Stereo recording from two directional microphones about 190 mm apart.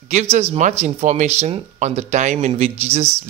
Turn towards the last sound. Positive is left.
turn(degrees=-35)  # may be behind; listen again after turning